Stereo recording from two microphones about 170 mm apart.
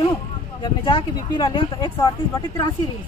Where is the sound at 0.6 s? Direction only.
25° left (ahead or behind).